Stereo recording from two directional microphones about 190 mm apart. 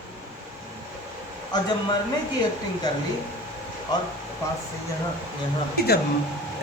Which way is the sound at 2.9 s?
20° left (ahead or behind).